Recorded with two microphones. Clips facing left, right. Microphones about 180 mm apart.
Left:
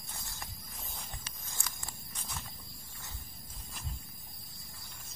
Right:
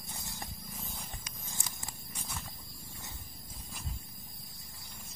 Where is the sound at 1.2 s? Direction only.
15° right (ahead or behind).